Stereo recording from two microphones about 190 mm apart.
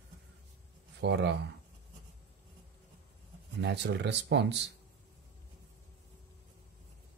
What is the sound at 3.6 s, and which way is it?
Speech, 65° right (ahead or behind).